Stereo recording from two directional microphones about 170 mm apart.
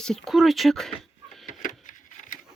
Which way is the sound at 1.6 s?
50° left (ahead or behind).